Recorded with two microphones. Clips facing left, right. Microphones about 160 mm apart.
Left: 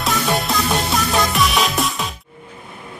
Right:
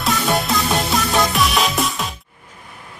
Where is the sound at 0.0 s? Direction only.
Centre (ahead or behind).